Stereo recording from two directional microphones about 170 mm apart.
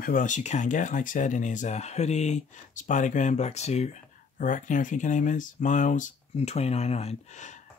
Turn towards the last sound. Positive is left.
turn(degrees=40)  # may be behind; listen again after turning